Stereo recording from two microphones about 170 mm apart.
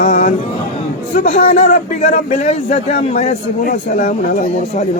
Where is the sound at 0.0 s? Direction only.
50° left (ahead or behind).